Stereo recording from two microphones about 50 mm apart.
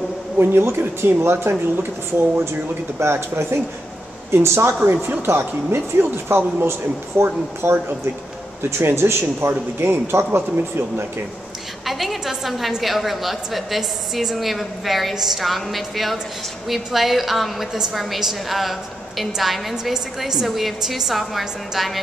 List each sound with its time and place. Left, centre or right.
0.4 s speech: right
7.6 s speech: right
8.8 s speech: right
11.8 s a woman's voice: centre